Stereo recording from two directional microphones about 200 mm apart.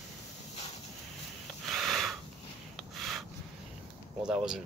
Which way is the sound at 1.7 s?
Centre (ahead or behind).